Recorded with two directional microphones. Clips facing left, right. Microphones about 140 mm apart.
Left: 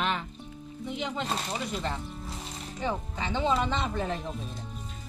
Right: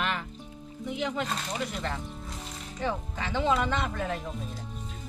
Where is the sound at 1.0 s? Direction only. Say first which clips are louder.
Right 1 dB; 20° left (ahead or behind).